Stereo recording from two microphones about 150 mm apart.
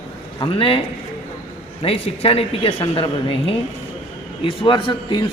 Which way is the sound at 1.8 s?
40° left (ahead or behind).